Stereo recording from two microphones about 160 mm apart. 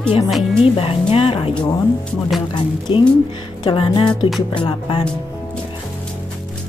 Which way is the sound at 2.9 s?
35° left (ahead or behind).